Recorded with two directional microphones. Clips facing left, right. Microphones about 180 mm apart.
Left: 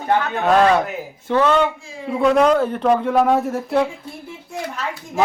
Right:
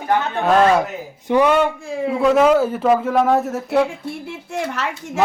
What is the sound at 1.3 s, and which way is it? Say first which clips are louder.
A man's voice: right 1 dB; 15° right (ahead or behind).